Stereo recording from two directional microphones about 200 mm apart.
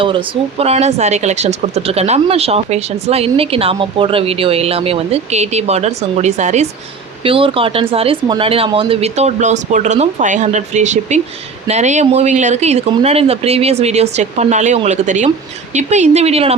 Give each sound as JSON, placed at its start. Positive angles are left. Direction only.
{"t": 0.6, "sound": "a woman's voice", "side_deg": -30}